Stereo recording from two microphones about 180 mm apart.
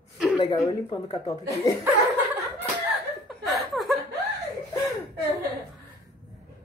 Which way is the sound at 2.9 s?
Centre (ahead or behind).